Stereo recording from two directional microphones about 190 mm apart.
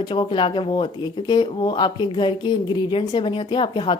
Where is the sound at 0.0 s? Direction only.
25° left (ahead or behind).